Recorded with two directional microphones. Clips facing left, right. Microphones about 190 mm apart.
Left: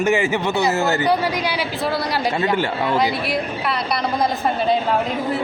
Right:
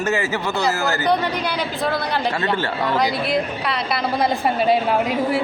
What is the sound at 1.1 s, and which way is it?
Speech, 10° left (ahead or behind).